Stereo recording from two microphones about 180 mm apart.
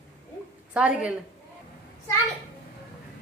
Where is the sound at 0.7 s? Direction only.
10° right (ahead or behind).